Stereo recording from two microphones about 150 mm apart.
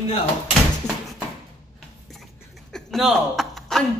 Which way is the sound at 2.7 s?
Centre (ahead or behind).